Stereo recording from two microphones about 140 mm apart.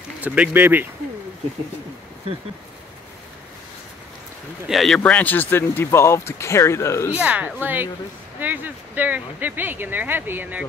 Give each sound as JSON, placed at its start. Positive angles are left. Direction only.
{"t": 0.2, "sound": "speech", "side_deg": -10}
{"t": 4.6, "sound": "speech", "side_deg": 0}
{"t": 7.2, "sound": "speech", "side_deg": -10}